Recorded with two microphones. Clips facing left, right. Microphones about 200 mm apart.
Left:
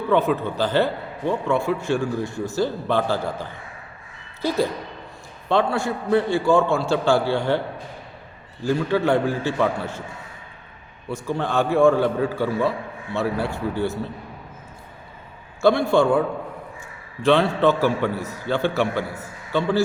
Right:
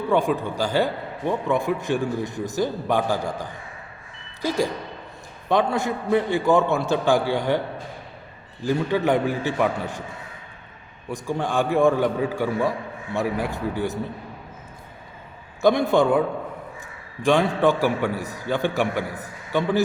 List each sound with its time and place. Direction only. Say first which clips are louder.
0.1 s a man's voice: left 2 dB; 15° right (ahead or behind)
8.6 s a man's voice: left 1 dB; 15° right (ahead or behind)
11.1 s a man's voice: left 1 dB; 15° right (ahead or behind)
15.6 s a man's voice: left 1 dB; 20° right (ahead or behind)
17.2 s a man's voice: left 1 dB; 15° right (ahead or behind)